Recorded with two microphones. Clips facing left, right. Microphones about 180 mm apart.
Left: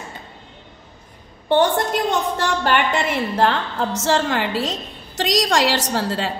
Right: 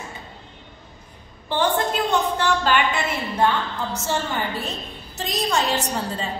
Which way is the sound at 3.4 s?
90° left.